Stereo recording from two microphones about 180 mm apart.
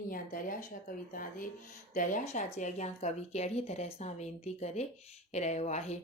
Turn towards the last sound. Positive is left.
turn(degrees=40)  # may be behind; listen again after turning